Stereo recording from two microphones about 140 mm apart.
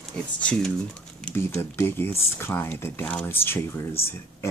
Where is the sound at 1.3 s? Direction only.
15° left (ahead or behind).